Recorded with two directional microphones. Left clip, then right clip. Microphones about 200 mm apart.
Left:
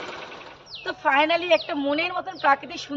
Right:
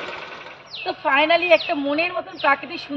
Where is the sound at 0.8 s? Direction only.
20° left (ahead or behind).